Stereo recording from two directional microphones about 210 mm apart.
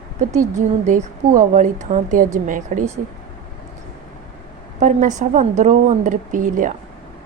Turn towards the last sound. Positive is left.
turn(degrees=-35)  # may be behind; listen again after turning